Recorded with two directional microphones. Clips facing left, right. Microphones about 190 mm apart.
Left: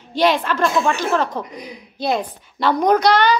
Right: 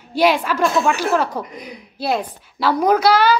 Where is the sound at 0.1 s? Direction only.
10° right (ahead or behind).